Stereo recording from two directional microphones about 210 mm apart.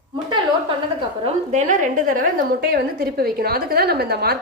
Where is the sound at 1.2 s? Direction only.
35° right (ahead or behind).